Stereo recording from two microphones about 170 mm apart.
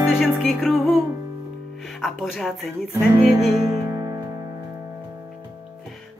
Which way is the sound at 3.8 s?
20° right (ahead or behind).